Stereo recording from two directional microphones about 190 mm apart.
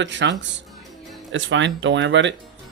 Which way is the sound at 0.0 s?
70° right (ahead or behind).